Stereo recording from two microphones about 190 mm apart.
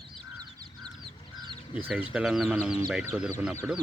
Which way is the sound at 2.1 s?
Centre (ahead or behind).